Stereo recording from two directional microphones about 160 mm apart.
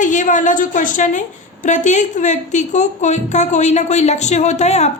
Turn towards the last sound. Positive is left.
turn(degrees=45)  # may be behind; listen again after turning